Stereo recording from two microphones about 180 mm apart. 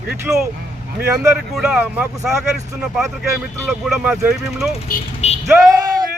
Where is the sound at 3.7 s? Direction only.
Centre (ahead or behind).